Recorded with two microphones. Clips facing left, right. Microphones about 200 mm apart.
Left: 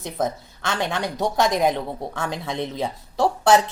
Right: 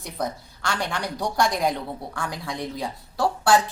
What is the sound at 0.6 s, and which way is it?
A woman's voice, 20° left (ahead or behind).